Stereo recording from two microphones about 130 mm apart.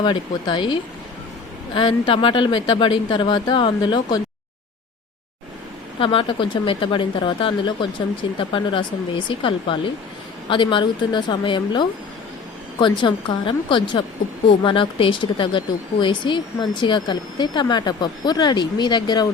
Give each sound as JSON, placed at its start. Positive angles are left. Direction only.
{"t": 0.0, "sound": "speech", "side_deg": 35}
{"t": 6.0, "sound": "speech", "side_deg": 40}